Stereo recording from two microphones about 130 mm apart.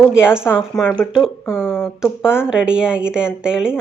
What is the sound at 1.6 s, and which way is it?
Speech, 15° left (ahead or behind).